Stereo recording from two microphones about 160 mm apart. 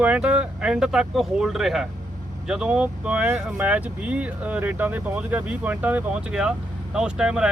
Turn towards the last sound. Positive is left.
turn(degrees=-5)  # may be behind; listen again after turning